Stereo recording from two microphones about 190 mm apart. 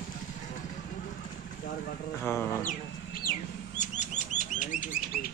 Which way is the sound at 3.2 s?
45° left (ahead or behind).